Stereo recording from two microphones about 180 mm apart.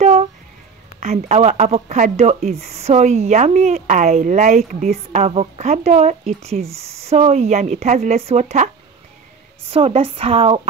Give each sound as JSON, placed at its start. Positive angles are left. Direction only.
{"t": 0.0, "sound": "music", "side_deg": -35}
{"t": 1.0, "sound": "speech", "side_deg": -35}
{"t": 9.7, "sound": "speech", "side_deg": -30}